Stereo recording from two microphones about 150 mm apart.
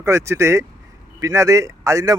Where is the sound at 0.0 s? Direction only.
20° right (ahead or behind).